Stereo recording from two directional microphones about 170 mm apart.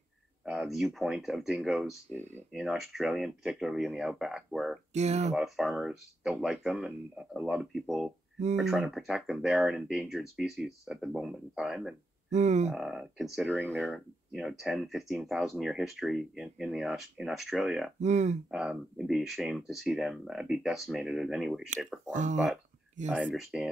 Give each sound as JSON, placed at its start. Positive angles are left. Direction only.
{"t": 0.5, "sound": "speech", "side_deg": 0}
{"t": 4.9, "sound": "speech", "side_deg": -40}
{"t": 5.3, "sound": "speech", "side_deg": 0}
{"t": 12.3, "sound": "speech", "side_deg": -45}
{"t": 12.7, "sound": "speech", "side_deg": 0}
{"t": 18.0, "sound": "speech", "side_deg": -45}
{"t": 18.5, "sound": "speech", "side_deg": -5}
{"t": 22.1, "sound": "speech", "side_deg": -45}
{"t": 23.1, "sound": "speech", "side_deg": -5}